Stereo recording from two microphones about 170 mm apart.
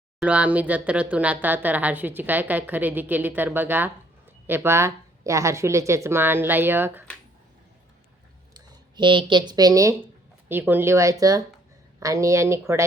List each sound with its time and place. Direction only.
0.2 s a woman's voice: 10° right (ahead or behind)
8.5 s a sound: 30° right (ahead or behind)
9.5 s a woman's voice: 20° right (ahead or behind)